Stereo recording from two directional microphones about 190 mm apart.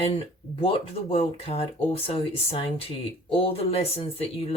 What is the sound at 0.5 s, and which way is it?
Speech, 30° left (ahead or behind).